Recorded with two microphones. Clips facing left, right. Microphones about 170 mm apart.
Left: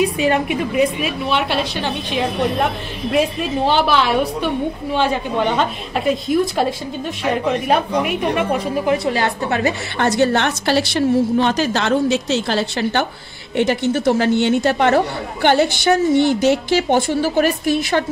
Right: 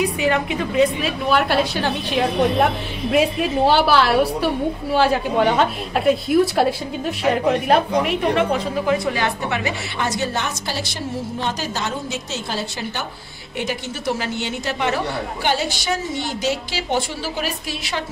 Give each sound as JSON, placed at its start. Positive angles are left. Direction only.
{"t": 0.0, "sound": "a woman's voice", "side_deg": 25}
{"t": 3.1, "sound": "a woman's voice", "side_deg": -5}
{"t": 9.1, "sound": "a woman's voice", "side_deg": 40}
{"t": 9.9, "sound": "a woman's voice", "side_deg": 60}
{"t": 13.6, "sound": "a woman's voice", "side_deg": 60}